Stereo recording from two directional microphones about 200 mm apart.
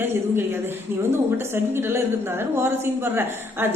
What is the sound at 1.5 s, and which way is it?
A woman's voice, 10° right (ahead or behind).